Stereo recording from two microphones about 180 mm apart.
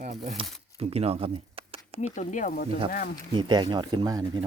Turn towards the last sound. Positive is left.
turn(degrees=-20)  # may be behind; listen again after turning